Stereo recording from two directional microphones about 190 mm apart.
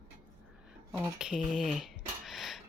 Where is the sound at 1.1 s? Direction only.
5° right (ahead or behind).